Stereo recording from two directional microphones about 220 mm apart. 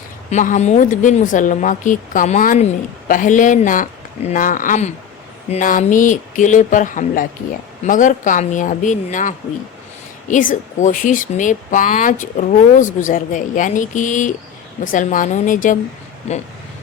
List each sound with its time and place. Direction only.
0.3 s speech: 35° left (ahead or behind)